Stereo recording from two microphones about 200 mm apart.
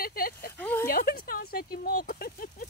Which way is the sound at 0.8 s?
50° left (ahead or behind).